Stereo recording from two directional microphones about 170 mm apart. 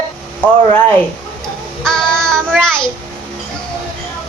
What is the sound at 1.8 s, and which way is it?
Child singing, 5° left (ahead or behind).